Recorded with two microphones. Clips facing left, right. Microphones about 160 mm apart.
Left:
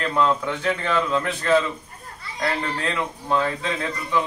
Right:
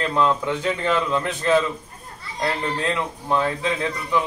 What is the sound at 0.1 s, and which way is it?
A man's voice, 15° right (ahead or behind).